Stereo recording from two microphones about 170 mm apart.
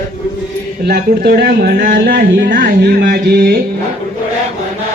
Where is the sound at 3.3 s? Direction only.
70° right (ahead or behind).